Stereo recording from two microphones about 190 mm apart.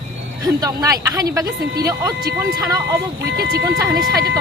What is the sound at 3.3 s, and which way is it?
Speech, 55° right (ahead or behind).